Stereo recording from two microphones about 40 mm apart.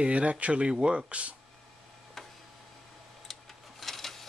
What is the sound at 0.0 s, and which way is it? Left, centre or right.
Speech, right.